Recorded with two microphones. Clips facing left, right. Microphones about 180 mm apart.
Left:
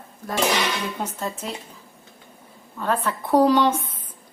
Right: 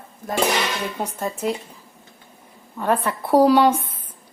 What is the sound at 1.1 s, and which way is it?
Speech, 10° right (ahead or behind).